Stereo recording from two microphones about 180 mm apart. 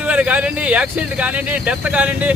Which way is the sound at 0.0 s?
10° right (ahead or behind).